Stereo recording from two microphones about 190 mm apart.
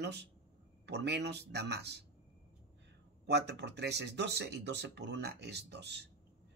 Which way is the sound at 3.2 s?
65° right (ahead or behind).